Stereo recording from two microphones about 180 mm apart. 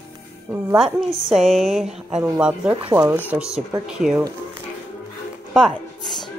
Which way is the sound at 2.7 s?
30° right (ahead or behind).